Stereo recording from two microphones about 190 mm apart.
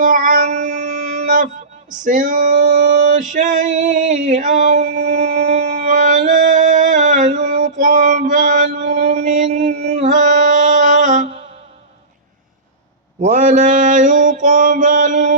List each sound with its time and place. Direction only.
0.0 s music: 45° right (ahead or behind)
2.0 s male singing: 45° right (ahead or behind)
13.2 s mantra: 45° right (ahead or behind)